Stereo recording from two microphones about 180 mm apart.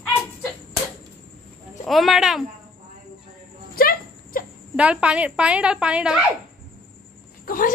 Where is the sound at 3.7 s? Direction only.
55° left (ahead or behind).